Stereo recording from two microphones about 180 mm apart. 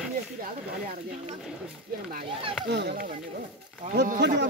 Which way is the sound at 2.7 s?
60° right (ahead or behind).